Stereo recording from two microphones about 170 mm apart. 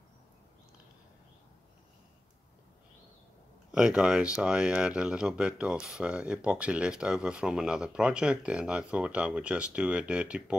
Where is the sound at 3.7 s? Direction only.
5° right (ahead or behind).